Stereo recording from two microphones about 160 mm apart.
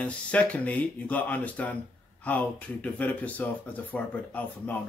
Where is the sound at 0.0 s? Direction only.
10° left (ahead or behind).